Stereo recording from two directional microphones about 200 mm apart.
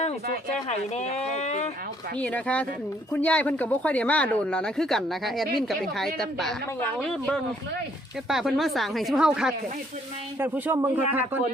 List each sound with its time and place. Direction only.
0.9 s speech: 35° left (ahead or behind)
2.1 s a man's voice: 5° left (ahead or behind); by 11.3 s 10° right (ahead or behind)